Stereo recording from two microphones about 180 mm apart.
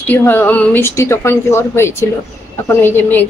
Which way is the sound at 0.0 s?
10° left (ahead or behind).